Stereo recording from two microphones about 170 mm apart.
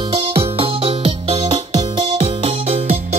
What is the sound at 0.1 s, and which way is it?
Music, 35° right (ahead or behind).